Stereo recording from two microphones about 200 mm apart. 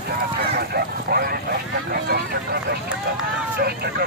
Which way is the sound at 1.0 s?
50° right (ahead or behind).